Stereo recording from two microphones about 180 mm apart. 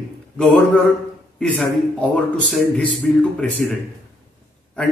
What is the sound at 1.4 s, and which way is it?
A man's voice, 5° left (ahead or behind).